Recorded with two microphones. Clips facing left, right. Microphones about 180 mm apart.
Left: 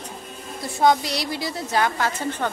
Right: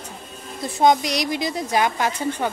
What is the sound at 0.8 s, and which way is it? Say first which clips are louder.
A woman's voice: right 2 dB; 15° right (ahead or behind).